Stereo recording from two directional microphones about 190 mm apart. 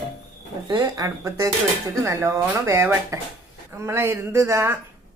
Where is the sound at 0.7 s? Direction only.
20° right (ahead or behind).